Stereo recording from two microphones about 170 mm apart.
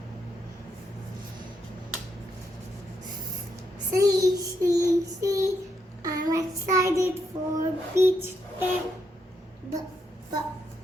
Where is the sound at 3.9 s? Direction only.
20° right (ahead or behind).